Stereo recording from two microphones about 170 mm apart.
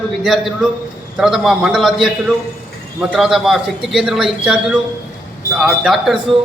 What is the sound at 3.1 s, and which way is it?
A man's voice, 5° right (ahead or behind).